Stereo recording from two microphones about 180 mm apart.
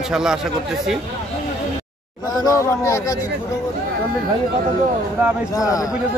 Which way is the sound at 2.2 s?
20° left (ahead or behind).